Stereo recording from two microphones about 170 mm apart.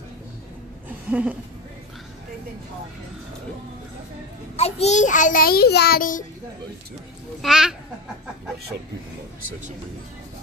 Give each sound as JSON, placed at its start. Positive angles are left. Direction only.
{"t": 1.1, "sound": "speech", "side_deg": -10}
{"t": 4.6, "sound": "a child's voice", "side_deg": 40}
{"t": 7.4, "sound": "speech", "side_deg": -5}